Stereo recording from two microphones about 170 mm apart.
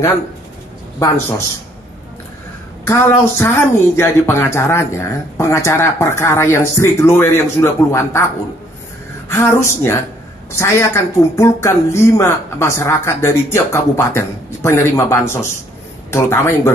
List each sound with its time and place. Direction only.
2.9 s speech: 15° left (ahead or behind)
9.3 s speech: 15° left (ahead or behind)